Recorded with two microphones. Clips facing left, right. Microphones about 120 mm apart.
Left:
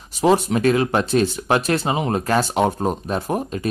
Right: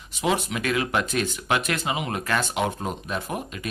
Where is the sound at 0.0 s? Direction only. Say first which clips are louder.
Left 8 dB; 35° left (ahead or behind).